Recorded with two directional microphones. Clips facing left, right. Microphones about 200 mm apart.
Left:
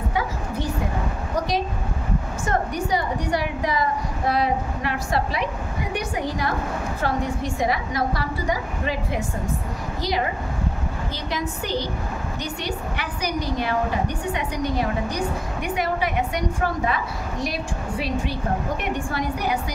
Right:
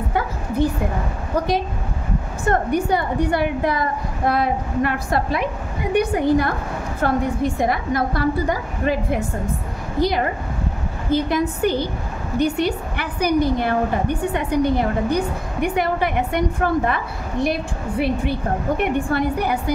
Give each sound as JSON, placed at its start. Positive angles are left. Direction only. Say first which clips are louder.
{"t": 2.4, "sound": "a woman's voice", "louder": "right 7 dB", "side_deg": -55}